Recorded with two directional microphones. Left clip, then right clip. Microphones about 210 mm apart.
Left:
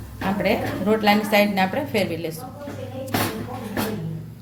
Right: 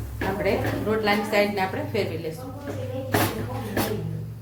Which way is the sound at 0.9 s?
45° left (ahead or behind).